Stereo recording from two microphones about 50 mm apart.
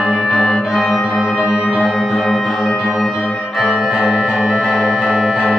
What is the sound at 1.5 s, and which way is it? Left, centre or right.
Music, left.